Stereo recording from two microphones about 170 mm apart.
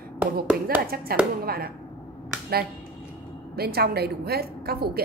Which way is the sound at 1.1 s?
60° right (ahead or behind).